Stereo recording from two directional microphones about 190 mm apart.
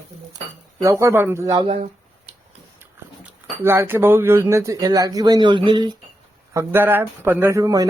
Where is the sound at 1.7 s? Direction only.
35° right (ahead or behind).